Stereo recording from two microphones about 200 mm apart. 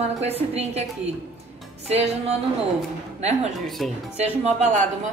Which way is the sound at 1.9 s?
30° right (ahead or behind).